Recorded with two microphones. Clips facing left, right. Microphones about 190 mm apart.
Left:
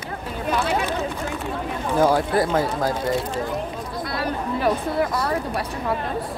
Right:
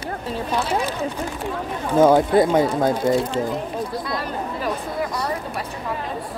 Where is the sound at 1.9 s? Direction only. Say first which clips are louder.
Right 5 dB; 20° right (ahead or behind).